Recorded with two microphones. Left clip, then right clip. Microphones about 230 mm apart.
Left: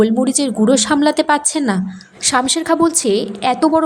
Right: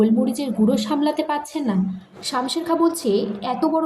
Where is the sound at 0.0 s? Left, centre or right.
Left.